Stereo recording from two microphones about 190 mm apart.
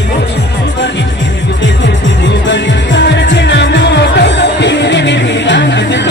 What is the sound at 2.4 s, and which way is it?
Music, 70° left (ahead or behind).